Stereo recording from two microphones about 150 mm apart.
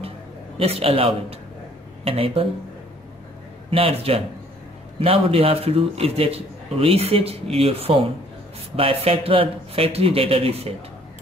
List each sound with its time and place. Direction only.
0.6 s a man's voice: 40° right (ahead or behind)
3.7 s a man's voice: 40° right (ahead or behind)